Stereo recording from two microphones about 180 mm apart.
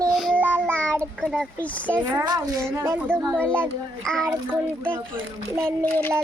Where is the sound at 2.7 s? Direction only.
15° right (ahead or behind).